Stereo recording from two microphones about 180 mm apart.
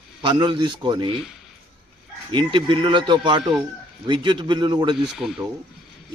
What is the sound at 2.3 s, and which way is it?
A man's voice, 25° right (ahead or behind).